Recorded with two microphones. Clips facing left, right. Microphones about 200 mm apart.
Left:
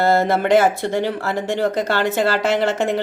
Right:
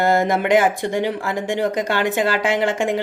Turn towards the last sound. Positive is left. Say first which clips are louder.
# left 1 dB
turn(degrees=-15)  # may be behind; listen again after turning